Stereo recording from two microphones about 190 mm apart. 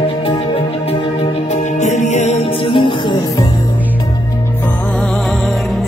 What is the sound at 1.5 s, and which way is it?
Music, 40° left (ahead or behind).